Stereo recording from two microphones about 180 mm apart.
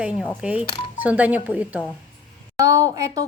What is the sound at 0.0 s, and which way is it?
A woman's voice, 5° right (ahead or behind).